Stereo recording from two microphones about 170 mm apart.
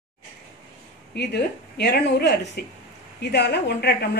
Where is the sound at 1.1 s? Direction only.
75° left (ahead or behind).